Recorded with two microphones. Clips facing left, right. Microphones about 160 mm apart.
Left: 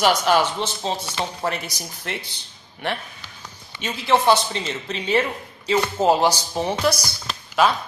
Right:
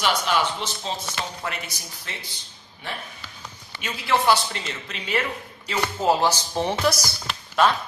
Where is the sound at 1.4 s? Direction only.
40° left (ahead or behind).